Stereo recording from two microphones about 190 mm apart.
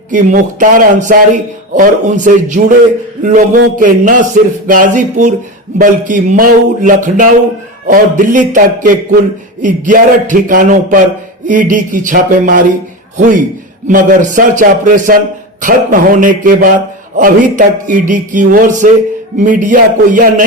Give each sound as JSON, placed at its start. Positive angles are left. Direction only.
{"t": 0.1, "sound": "a man's voice", "side_deg": -40}